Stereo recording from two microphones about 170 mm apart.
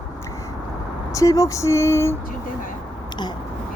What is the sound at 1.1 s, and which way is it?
Speech, 20° left (ahead or behind).